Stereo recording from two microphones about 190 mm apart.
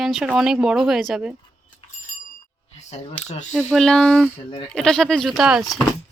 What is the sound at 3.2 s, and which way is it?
Speech, 35° left (ahead or behind).